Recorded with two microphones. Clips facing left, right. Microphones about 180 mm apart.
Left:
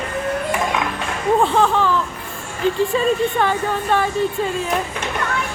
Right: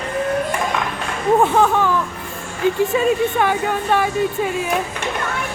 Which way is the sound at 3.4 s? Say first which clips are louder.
Right 1 dB; 10° right (ahead or behind).